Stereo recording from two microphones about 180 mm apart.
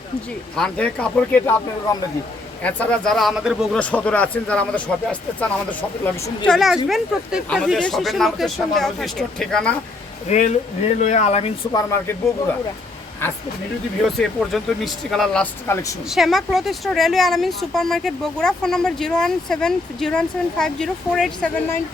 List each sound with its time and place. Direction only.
0.5 s speech: 5° left (ahead or behind)
2.6 s speech: 10° left (ahead or behind)
6.5 s a woman's voice: centre (ahead or behind)
10.2 s speech: 40° left (ahead or behind)
11.7 s speech: 15° left (ahead or behind)
14.0 s a woman's voice: centre (ahead or behind)
16.0 s a woman's voice: centre (ahead or behind)